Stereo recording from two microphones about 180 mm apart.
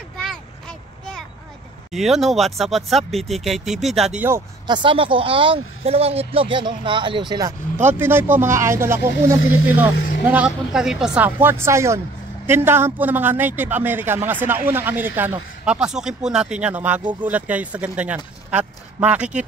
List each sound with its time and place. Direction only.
0.2 s a sound: 5° left (ahead or behind)
1.9 s speech: centre (ahead or behind)
4.6 s speech: 30° right (ahead or behind)
7.8 s a man's voice: 10° right (ahead or behind)
9.9 s vehicle: 55° left (ahead or behind)
10.2 s a man's voice: 5° right (ahead or behind)